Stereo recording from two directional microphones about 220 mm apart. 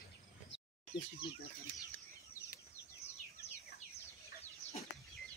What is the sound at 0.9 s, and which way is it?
Speech, 20° left (ahead or behind).